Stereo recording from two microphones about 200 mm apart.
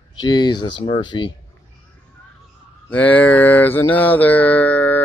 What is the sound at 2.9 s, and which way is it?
Mantra, 10° left (ahead or behind).